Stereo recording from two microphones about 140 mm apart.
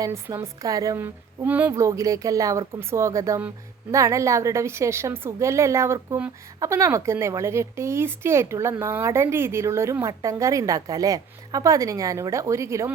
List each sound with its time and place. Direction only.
0.0 s speech: 20° right (ahead or behind)